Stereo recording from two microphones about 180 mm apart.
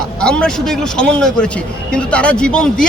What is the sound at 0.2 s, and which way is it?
Speech, 5° left (ahead or behind).